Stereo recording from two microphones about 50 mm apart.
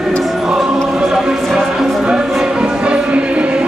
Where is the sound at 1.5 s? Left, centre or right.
Centre.